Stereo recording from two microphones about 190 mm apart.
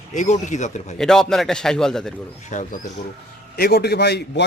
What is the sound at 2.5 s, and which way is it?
Speech, 40° left (ahead or behind).